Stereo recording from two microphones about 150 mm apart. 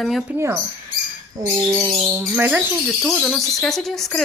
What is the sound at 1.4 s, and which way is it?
Speech, 15° right (ahead or behind).